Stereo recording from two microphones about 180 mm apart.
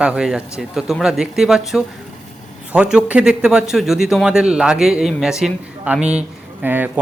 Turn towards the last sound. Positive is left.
turn(degrees=-10)  # may be behind; listen again after turning